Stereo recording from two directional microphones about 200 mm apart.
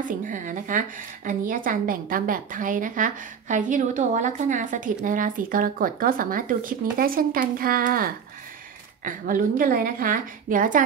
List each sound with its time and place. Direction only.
0.3 s a woman's voice: 40° right (ahead or behind)